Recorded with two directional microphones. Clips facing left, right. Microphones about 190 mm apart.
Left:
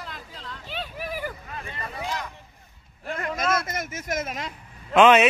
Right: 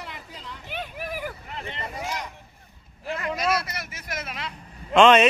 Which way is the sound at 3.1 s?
50° left (ahead or behind).